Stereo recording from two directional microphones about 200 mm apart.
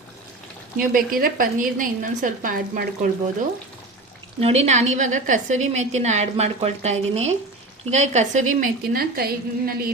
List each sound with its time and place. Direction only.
0.8 s a woman's voice: 45° right (ahead or behind)
4.4 s a woman's voice: 30° right (ahead or behind); by 9.9 s 50° right (ahead or behind)